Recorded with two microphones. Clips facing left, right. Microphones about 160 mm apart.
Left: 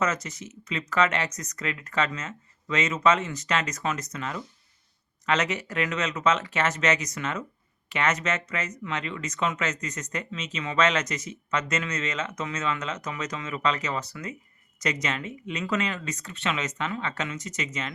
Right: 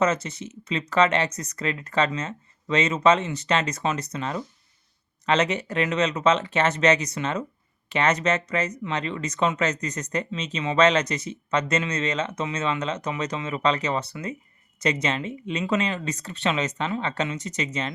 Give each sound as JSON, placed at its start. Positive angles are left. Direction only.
{"t": 0.0, "sound": "speech", "side_deg": -30}